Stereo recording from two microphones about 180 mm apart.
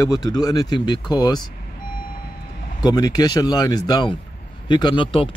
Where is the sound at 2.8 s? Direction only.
20° left (ahead or behind).